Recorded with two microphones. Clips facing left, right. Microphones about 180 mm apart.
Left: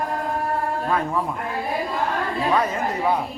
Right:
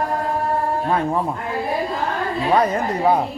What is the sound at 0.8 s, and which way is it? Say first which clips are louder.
Sheep: right 2 dB; 30° right (ahead or behind).